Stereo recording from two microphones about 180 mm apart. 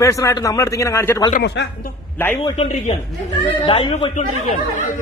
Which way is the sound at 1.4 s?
75° left (ahead or behind).